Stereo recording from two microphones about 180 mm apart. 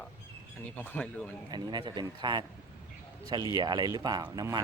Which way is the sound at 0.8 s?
10° left (ahead or behind).